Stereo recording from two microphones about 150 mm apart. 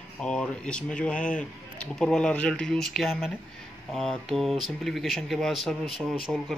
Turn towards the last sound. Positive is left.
turn(degrees=0)  # may be behind; listen again after turning